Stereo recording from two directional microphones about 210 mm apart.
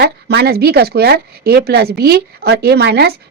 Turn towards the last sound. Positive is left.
turn(degrees=-50)  # may be behind; listen again after turning